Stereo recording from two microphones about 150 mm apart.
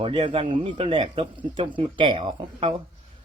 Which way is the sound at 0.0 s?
35° right (ahead or behind).